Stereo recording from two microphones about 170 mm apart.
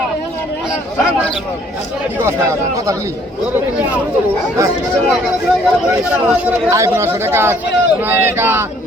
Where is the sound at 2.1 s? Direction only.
15° right (ahead or behind).